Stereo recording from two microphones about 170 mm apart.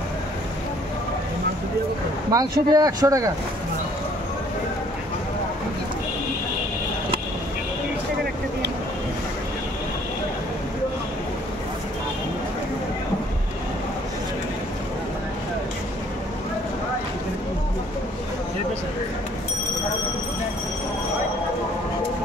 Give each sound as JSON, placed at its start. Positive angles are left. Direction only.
{"t": 2.3, "sound": "speech", "side_deg": -20}